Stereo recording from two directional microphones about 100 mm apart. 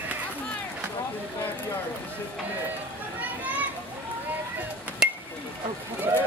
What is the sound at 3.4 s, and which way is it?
Children playing, 15° right (ahead or behind).